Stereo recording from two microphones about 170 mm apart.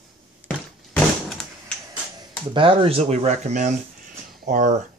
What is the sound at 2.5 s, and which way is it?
Speech, 30° right (ahead or behind).